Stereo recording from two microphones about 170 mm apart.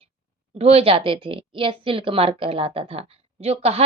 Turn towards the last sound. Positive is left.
turn(degrees=-35)  # may be behind; listen again after turning